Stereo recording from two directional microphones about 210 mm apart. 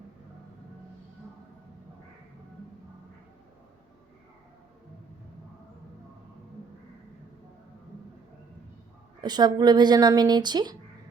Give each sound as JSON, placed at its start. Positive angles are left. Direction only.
{"t": 9.2, "sound": "speech", "side_deg": -20}